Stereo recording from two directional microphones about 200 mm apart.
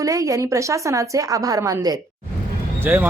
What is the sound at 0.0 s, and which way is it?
Speech, 15° right (ahead or behind).